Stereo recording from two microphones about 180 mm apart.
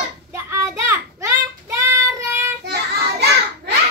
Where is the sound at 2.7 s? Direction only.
65° right (ahead or behind).